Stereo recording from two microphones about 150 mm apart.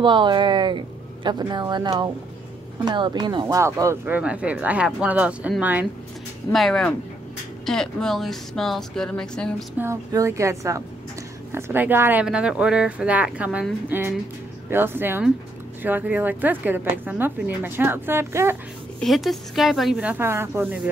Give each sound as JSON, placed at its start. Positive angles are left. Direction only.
{"t": 0.0, "sound": "a woman's voice", "side_deg": -30}
{"t": 3.6, "sound": "speech", "side_deg": -20}
{"t": 6.5, "sound": "speech", "side_deg": 0}
{"t": 9.8, "sound": "a woman's voice", "side_deg": -20}
{"t": 18.9, "sound": "speech", "side_deg": 0}